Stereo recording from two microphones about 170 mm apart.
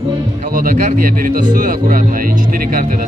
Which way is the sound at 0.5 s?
55° right (ahead or behind).